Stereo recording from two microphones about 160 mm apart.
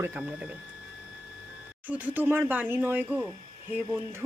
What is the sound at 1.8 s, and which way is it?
Speech, 10° right (ahead or behind).